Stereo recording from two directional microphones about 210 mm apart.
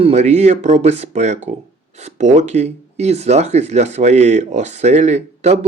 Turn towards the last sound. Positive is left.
turn(degrees=-30)  # may be behind; listen again after turning